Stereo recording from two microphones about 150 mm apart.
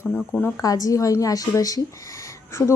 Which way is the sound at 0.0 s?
15° left (ahead or behind).